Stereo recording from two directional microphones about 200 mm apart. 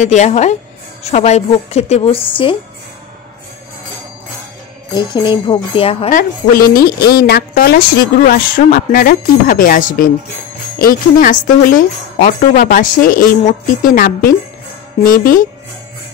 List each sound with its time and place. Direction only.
0.0 s a woman's voice: 35° left (ahead or behind)
4.9 s speech: 25° left (ahead or behind)
6.1 s a woman's voice: 45° left (ahead or behind)